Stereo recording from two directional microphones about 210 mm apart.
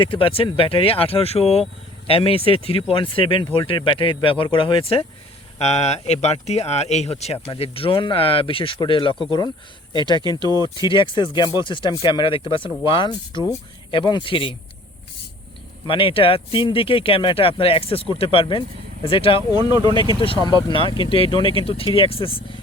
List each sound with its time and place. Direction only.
0.0 s speech: 25° left (ahead or behind)
15.9 s speech: 25° left (ahead or behind)